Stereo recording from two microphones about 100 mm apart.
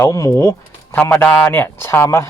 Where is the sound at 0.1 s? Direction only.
35° left (ahead or behind).